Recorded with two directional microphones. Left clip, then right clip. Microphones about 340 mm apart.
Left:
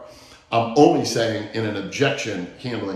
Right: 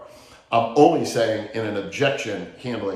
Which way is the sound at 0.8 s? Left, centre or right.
Centre.